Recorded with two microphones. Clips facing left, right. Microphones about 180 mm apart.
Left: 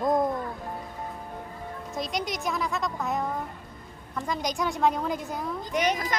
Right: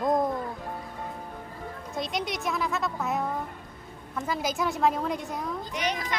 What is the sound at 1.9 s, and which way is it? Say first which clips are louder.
Speech: even; centre (ahead or behind).